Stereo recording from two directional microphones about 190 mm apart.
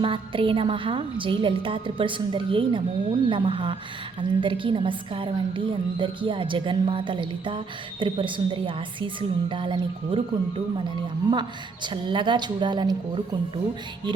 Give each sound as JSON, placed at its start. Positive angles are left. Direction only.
{"t": 0.0, "sound": "a woman's voice", "side_deg": -30}
{"t": 11.3, "sound": "a woman's voice", "side_deg": -25}